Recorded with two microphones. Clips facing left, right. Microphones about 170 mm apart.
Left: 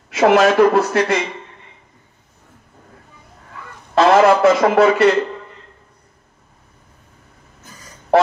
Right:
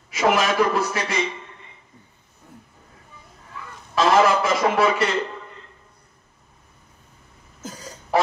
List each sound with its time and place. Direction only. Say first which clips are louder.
0.1 s a man's voice: left 8 dB; 65° left (ahead or behind)
3.9 s a man's voice: left 6 dB; 65° left (ahead or behind)